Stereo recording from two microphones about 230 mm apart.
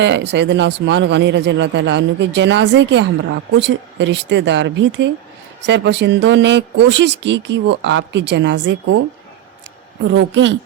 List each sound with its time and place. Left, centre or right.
0.0 s a man's voice: right
10.2 s a man's voice: right